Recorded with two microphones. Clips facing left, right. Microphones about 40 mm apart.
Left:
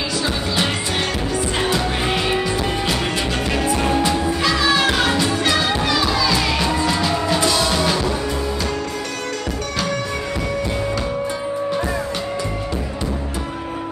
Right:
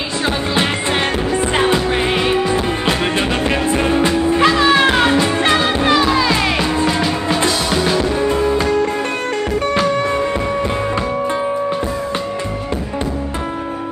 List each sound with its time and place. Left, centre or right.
1.3 s music: right
6.9 s music: right
8.0 s music: right